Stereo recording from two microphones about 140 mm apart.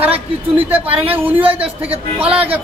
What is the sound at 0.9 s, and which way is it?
Speech, 15° right (ahead or behind).